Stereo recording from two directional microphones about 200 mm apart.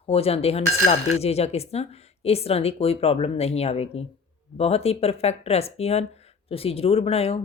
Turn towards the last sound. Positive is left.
turn(degrees=30)  # may be behind; listen again after turning